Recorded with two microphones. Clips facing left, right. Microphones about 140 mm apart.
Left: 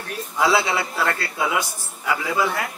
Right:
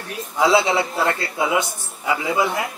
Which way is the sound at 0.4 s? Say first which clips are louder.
Right 3 dB; 20° right (ahead or behind).